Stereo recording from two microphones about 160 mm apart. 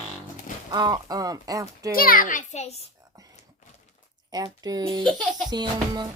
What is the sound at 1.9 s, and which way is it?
Speech, 65° left (ahead or behind).